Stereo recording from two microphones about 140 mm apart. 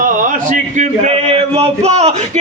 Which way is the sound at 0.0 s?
70° right (ahead or behind).